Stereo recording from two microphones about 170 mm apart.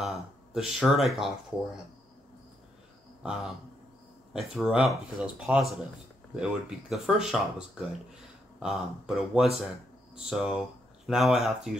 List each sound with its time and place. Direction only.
0.0 s speech: centre (ahead or behind)
3.2 s speech: centre (ahead or behind)